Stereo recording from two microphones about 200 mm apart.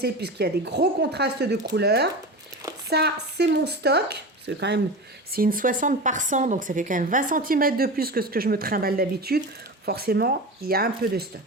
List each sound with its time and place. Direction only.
0.0 s speech: 55° right (ahead or behind)
5.3 s speech: 45° right (ahead or behind)